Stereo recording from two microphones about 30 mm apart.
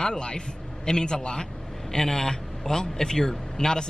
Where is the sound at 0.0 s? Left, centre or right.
Left.